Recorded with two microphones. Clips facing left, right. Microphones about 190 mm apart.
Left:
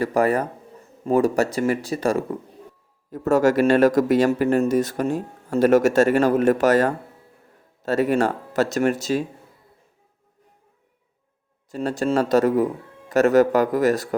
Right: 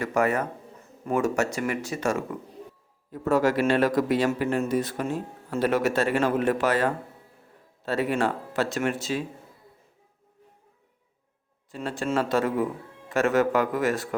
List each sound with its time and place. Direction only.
0.0 s a man's voice: 35° left (ahead or behind)
11.7 s speech: 40° left (ahead or behind)